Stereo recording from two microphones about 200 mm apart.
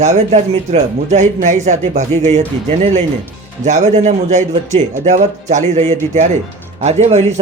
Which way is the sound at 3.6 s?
35° right (ahead or behind).